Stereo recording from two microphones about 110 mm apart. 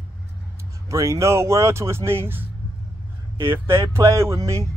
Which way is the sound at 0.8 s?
30° right (ahead or behind).